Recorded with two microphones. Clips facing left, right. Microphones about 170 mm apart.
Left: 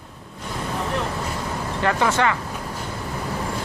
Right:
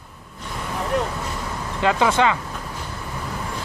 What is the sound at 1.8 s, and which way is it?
Speech, 15° right (ahead or behind).